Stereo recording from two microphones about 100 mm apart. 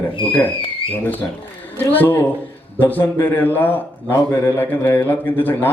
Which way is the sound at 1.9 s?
20° left (ahead or behind).